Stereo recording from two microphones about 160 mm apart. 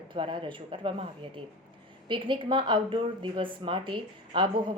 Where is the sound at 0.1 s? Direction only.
30° right (ahead or behind).